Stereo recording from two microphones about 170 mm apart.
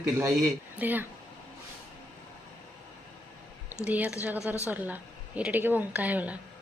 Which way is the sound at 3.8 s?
10° right (ahead or behind).